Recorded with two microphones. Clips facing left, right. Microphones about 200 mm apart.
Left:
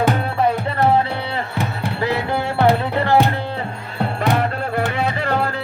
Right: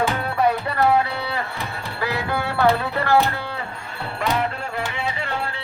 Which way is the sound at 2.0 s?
25° left (ahead or behind).